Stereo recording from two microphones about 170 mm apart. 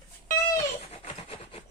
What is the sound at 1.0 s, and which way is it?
Rub, 40° left (ahead or behind).